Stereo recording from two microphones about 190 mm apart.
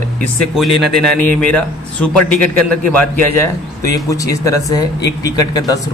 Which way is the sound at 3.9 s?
20° left (ahead or behind).